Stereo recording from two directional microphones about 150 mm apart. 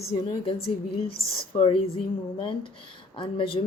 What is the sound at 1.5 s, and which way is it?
Speech, 35° left (ahead or behind).